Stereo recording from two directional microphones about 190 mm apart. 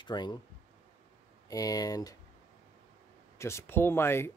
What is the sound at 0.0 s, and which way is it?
Speech, 25° left (ahead or behind).